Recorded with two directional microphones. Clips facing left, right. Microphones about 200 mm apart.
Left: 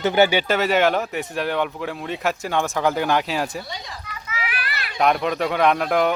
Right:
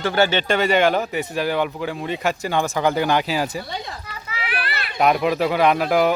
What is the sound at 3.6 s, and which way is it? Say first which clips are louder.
Speech: right 4 dB; 60° right (ahead or behind).